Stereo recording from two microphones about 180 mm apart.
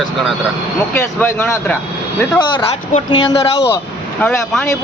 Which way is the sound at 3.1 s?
25° left (ahead or behind).